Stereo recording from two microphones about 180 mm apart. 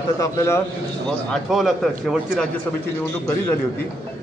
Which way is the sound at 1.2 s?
Centre (ahead or behind).